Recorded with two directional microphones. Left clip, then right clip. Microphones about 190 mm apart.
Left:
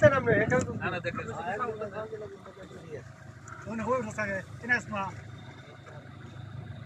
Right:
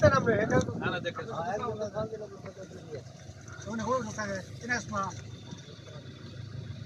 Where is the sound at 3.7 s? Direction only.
Centre (ahead or behind).